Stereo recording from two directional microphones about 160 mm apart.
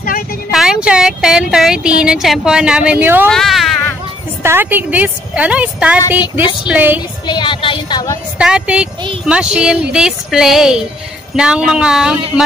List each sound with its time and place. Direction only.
0.5 s speech: 5° right (ahead or behind)
3.3 s speech: centre (ahead or behind)
4.4 s a woman's voice: 15° right (ahead or behind)
5.9 s speech: 25° left (ahead or behind)
6.7 s a woman's voice: 10° right (ahead or behind)
7.2 s speech: 30° left (ahead or behind)
8.4 s speech: 5° right (ahead or behind)